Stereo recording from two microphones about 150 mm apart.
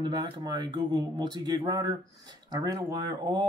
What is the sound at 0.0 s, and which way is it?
Speech, 30° right (ahead or behind).